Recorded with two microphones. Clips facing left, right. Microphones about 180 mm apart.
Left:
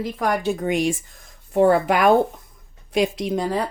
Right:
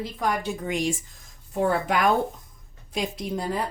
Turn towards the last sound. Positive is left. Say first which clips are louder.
# left 6 dB
turn(degrees=90)